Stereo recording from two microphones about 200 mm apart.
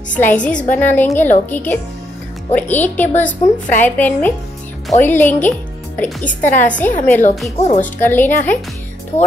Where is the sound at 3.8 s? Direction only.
10° left (ahead or behind).